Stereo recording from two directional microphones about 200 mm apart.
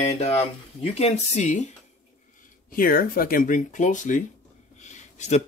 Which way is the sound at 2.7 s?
45° left (ahead or behind).